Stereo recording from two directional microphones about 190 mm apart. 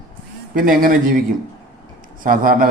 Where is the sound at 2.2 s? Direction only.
45° right (ahead or behind).